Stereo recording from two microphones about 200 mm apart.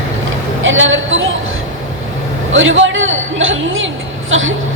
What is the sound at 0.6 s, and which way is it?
Speech, 75° right (ahead or behind).